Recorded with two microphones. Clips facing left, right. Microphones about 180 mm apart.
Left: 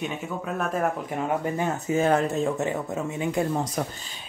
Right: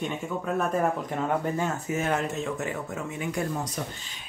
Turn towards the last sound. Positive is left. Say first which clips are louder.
# left 5 dB
turn(degrees=35)  # may be behind; listen again after turning